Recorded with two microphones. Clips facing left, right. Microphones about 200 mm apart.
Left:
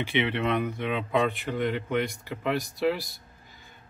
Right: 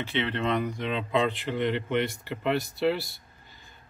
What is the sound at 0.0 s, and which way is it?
Speech, 10° left (ahead or behind).